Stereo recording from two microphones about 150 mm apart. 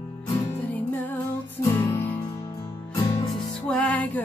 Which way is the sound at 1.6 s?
15° left (ahead or behind).